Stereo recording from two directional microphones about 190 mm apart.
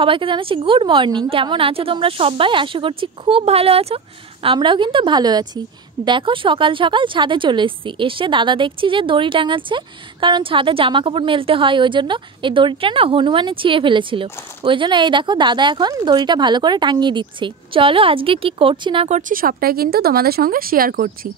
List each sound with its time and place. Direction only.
0.0 s a woman's voice: 25° right (ahead or behind); by 21.3 s 50° right (ahead or behind)